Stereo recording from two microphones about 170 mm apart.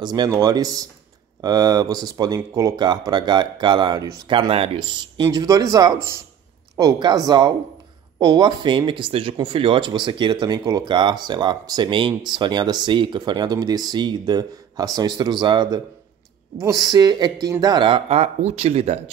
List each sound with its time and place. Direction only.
0.0 s speech: 25° right (ahead or behind)